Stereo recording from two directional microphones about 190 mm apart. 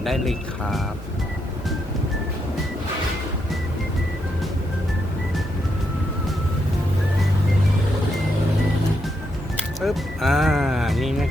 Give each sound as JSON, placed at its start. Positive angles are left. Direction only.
{"t": 0.0, "sound": "speech", "side_deg": 0}
{"t": 9.8, "sound": "speech", "side_deg": 0}